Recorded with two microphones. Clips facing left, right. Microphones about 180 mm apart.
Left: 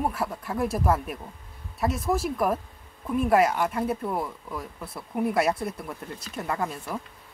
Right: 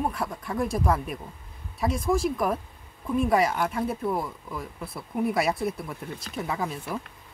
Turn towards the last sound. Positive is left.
turn(degrees=0)  # may be behind; listen again after turning